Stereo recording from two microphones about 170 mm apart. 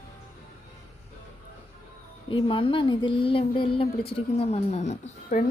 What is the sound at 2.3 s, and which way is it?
A woman's voice, 30° left (ahead or behind).